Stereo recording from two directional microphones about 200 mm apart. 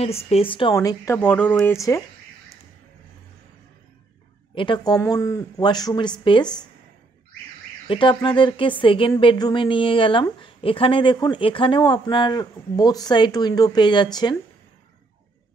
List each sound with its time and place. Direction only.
0.0 s speech: 30° left (ahead or behind)
0.7 s speech: 15° left (ahead or behind)
4.6 s speech: 20° left (ahead or behind)
7.9 s speech: 25° left (ahead or behind)